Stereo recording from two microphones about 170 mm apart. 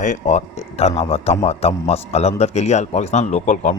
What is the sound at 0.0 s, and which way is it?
A man's voice, 45° left (ahead or behind).